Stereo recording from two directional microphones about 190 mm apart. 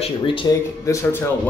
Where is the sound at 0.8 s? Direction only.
15° left (ahead or behind).